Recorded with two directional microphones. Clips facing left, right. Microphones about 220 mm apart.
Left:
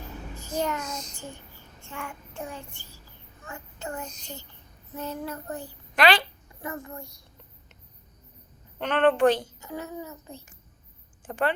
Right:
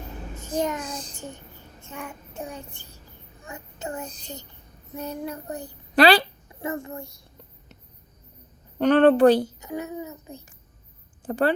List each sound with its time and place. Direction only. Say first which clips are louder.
0.8 s a woman's voice: right 2 dB; 30° right (ahead or behind)
1.9 s a child's voice: right 1 dB; 20° right (ahead or behind)
3.4 s child singing: right 2 dB; 20° right (ahead or behind)
4.0 s a woman's voice: right 2 dB; 35° right (ahead or behind)
4.9 s child singing: right 2 dB; 15° right (ahead or behind)
5.9 s a woman's voice: right 5 dB; 35° right (ahead or behind)
6.6 s a child's voice: right 5 dB; 25° right (ahead or behind)
8.8 s a woman's voice: right 6 dB; 40° right (ahead or behind)
9.6 s a child's voice: right 4 dB; 15° right (ahead or behind)
11.3 s a woman's voice: right 5 dB; 35° right (ahead or behind)